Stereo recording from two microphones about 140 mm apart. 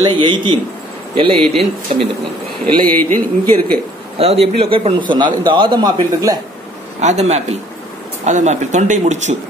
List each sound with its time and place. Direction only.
0.0 s a man's voice: 35° right (ahead or behind)
1.4 s speech: centre (ahead or behind)
2.6 s speech: 10° left (ahead or behind)
4.2 s a man's voice: 45° right (ahead or behind); by 6.4 s 30° right (ahead or behind)
7.0 s a man's voice: 55° right (ahead or behind)